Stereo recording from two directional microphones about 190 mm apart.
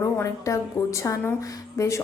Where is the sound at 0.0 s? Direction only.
15° left (ahead or behind).